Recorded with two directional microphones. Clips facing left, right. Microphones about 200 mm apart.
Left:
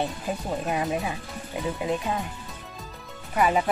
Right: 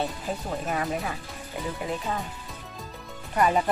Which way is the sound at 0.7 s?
15° left (ahead or behind).